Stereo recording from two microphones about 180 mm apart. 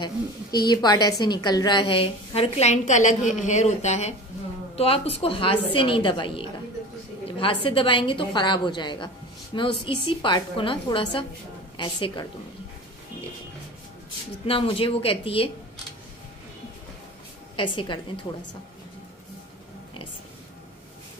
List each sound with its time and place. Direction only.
0.0 s a woman's voice: 20° left (ahead or behind)
14.4 s a woman's voice: 30° left (ahead or behind)
17.6 s a woman's voice: 25° left (ahead or behind)